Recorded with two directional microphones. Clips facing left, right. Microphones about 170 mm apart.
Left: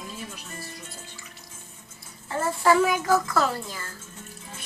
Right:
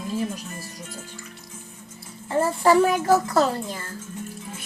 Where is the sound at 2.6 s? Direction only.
30° right (ahead or behind).